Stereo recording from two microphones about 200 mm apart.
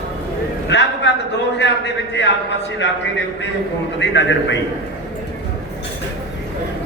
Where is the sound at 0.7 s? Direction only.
60° left (ahead or behind).